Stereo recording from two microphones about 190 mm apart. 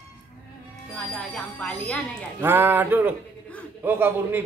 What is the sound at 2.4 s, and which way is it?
A man's voice, 10° right (ahead or behind).